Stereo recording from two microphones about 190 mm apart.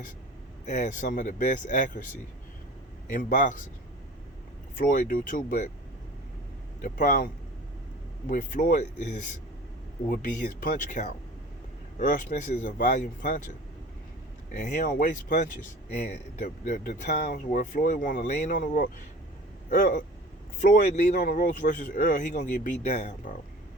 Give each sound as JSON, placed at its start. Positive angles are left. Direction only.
{"t": 0.6, "sound": "speech", "side_deg": 40}
{"t": 3.1, "sound": "speech", "side_deg": 45}
{"t": 4.8, "sound": "speech", "side_deg": 45}
{"t": 6.8, "sound": "speech", "side_deg": 45}
{"t": 8.3, "sound": "speech", "side_deg": 45}